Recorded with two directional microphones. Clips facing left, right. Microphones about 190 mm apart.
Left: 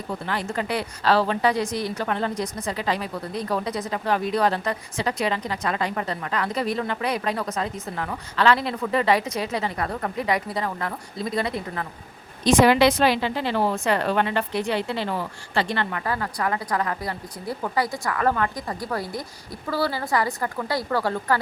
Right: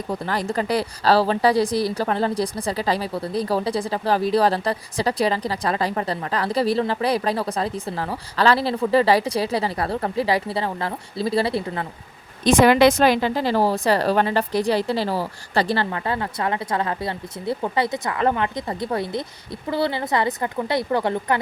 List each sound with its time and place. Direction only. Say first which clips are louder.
0.1 s speech: right 3 dB; 40° right (ahead or behind)
12.5 s a woman's voice: right 2 dB; 55° right (ahead or behind); by 21.3 s 20° right (ahead or behind)